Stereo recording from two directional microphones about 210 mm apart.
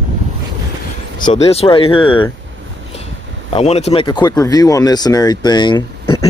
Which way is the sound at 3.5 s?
30° left (ahead or behind).